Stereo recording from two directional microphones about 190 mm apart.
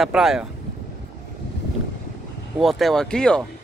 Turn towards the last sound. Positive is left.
turn(degrees=5)  # may be behind; listen again after turning